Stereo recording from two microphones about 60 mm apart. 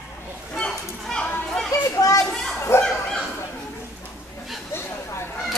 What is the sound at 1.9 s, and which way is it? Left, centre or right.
Children playing, left.